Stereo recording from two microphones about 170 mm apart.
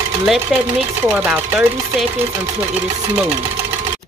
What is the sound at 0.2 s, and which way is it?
Speech, 5° right (ahead or behind).